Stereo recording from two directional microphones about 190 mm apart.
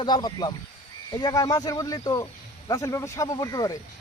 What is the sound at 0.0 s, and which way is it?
Speech, 25° left (ahead or behind).